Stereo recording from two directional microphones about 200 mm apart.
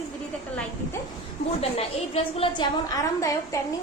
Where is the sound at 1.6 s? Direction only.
30° left (ahead or behind).